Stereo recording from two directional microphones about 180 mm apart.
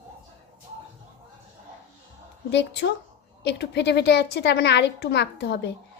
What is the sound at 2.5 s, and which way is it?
A woman's voice, 75° left (ahead or behind).